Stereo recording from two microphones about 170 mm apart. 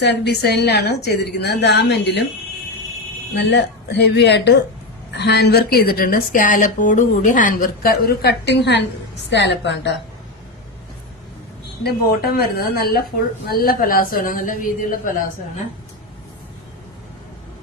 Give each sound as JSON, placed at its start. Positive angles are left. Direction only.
{"t": 0.0, "sound": "a woman's voice", "side_deg": 80}
{"t": 3.3, "sound": "speech", "side_deg": 90}
{"t": 5.1, "sound": "a woman's voice", "side_deg": 75}
{"t": 11.8, "sound": "a woman's voice", "side_deg": 65}